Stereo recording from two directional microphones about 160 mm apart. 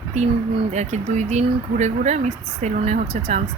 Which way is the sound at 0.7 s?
45° right (ahead or behind).